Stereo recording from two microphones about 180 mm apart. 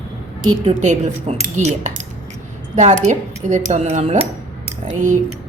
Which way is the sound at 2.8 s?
40° right (ahead or behind).